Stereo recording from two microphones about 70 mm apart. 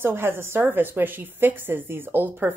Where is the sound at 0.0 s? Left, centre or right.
Right.